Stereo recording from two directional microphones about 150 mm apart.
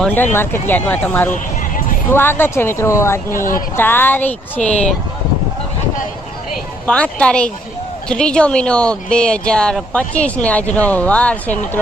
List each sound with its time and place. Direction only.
0.0 s speech: 10° left (ahead or behind)
6.8 s speech: 5° left (ahead or behind)